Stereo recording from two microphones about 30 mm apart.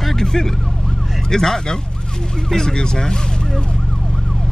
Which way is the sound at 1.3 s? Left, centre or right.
Centre.